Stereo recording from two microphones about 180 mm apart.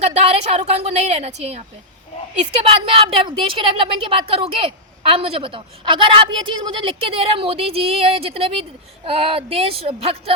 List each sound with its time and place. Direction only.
0.0 s a woman's voice: 35° right (ahead or behind)
2.9 s a woman's voice: 30° right (ahead or behind)